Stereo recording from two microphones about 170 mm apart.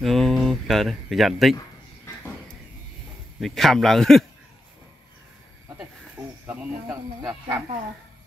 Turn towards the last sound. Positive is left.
turn(degrees=-15)  # may be behind; listen again after turning